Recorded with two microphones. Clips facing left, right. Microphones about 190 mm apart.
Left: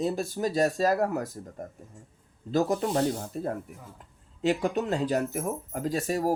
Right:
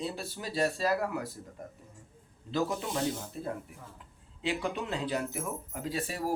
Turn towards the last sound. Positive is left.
turn(degrees=45)  # may be behind; listen again after turning